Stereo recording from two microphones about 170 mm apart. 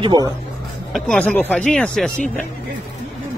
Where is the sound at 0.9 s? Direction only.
Centre (ahead or behind).